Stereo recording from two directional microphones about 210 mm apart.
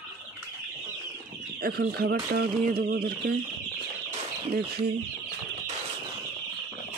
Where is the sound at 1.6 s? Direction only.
45° right (ahead or behind).